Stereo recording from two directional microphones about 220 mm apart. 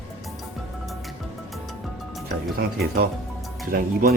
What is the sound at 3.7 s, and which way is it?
Speech, 40° right (ahead or behind).